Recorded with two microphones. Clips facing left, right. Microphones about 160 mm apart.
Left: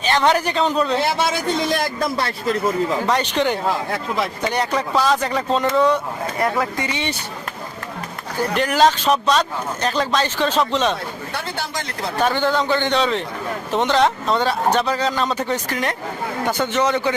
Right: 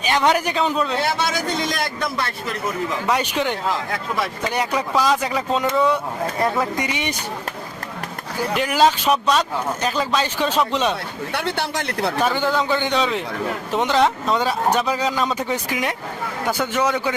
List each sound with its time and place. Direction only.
0.0 s speech: 10° right (ahead or behind)
1.7 s a man's voice: 30° left (ahead or behind)
3.1 s speech: 5° right (ahead or behind)
3.9 s speech: 25° left (ahead or behind)
4.4 s speech: 10° right (ahead or behind)
6.4 s speech: 20° right (ahead or behind)
8.5 s speech: 5° right (ahead or behind)
11.3 s speech: 65° right (ahead or behind)
12.2 s speech: 5° right (ahead or behind)